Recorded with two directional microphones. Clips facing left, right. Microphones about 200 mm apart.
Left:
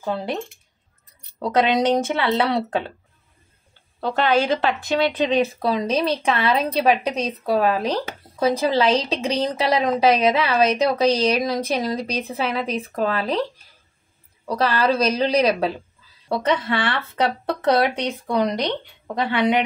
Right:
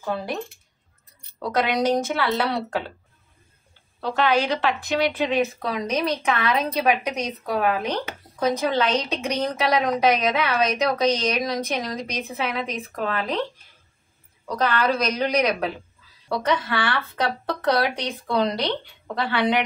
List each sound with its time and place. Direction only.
0.0 s speech: 25° left (ahead or behind)
1.7 s speech: 25° left (ahead or behind)
4.1 s speech: 30° left (ahead or behind)